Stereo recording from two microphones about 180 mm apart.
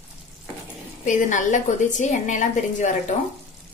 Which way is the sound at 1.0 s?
45° left (ahead or behind).